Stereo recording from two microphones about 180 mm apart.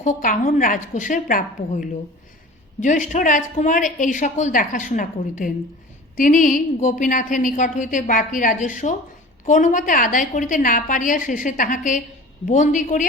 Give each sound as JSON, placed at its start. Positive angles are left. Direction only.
{"t": 0.0, "sound": "a woman's voice", "side_deg": 45}